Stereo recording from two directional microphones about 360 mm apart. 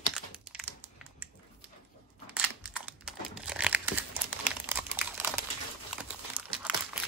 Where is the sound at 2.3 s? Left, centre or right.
Centre.